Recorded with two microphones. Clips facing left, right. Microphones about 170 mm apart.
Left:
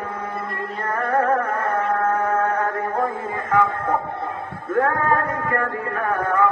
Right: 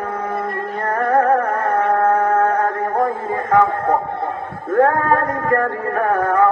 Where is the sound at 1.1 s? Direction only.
45° right (ahead or behind).